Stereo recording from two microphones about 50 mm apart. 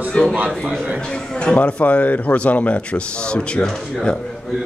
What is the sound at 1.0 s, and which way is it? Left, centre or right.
A man's voice, centre.